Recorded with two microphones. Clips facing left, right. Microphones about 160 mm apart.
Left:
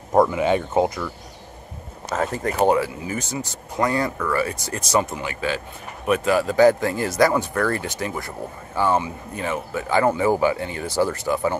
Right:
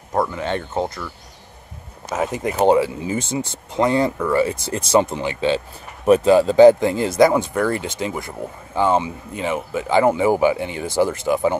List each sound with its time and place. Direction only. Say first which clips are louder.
0.1 s speech: left 4 dB; 15° left (ahead or behind)
2.0 s speech: right 1 dB; 10° right (ahead or behind)